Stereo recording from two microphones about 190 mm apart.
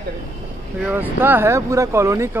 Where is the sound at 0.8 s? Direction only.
10° right (ahead or behind).